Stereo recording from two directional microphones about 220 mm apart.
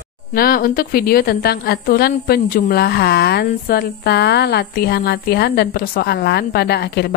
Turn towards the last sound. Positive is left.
turn(degrees=50)  # may be behind; listen again after turning